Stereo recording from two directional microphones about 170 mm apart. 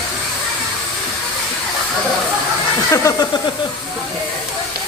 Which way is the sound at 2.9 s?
20° left (ahead or behind).